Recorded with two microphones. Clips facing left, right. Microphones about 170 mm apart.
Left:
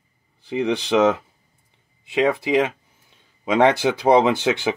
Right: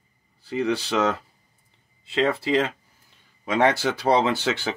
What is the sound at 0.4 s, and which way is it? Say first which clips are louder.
Speech: left 2 dB; 15° left (ahead or behind).